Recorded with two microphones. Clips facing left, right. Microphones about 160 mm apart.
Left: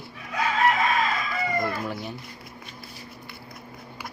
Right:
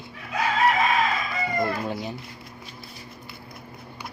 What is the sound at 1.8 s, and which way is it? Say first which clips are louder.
Speech: right 2 dB; 25° right (ahead or behind).